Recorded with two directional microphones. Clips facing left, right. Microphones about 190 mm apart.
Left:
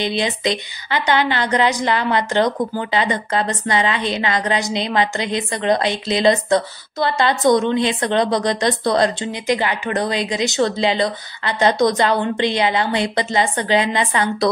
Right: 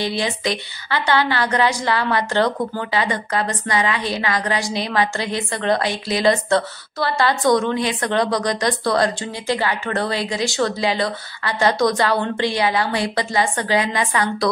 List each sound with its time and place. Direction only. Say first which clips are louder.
0.0 s a woman's voice: left 2 dB; 20° left (ahead or behind)